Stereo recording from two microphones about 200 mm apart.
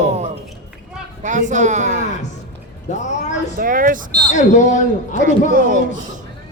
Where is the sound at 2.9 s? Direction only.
35° left (ahead or behind).